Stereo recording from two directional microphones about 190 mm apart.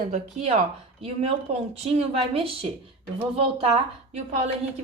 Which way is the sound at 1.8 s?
30° right (ahead or behind).